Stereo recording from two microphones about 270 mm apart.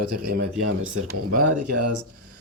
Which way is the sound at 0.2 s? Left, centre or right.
Right.